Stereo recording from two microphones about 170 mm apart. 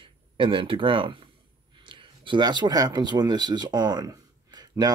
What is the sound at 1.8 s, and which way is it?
Speech, 30° right (ahead or behind).